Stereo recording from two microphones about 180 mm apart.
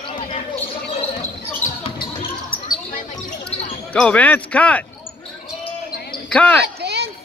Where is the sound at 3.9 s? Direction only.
5° left (ahead or behind).